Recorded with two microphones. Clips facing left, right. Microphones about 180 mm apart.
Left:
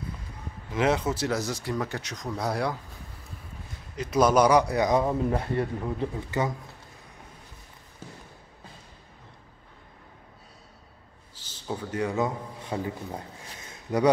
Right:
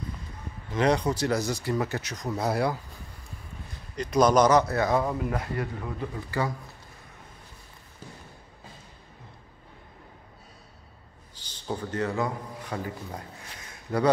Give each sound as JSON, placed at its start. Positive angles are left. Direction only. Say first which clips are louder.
{"t": 0.7, "sound": "a man's voice", "louder": "right 1 dB", "side_deg": 5}
{"t": 5.2, "sound": "speech", "louder": "left 4 dB", "side_deg": 30}
{"t": 11.6, "sound": "a man's voice", "louder": "even", "side_deg": 5}
{"t": 13.7, "sound": "a sound", "louder": "left 1 dB", "side_deg": 15}